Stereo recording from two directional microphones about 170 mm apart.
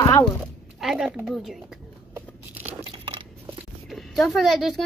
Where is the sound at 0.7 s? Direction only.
Centre (ahead or behind).